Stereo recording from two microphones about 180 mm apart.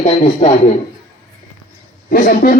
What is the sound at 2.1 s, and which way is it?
Speech, 55° left (ahead or behind).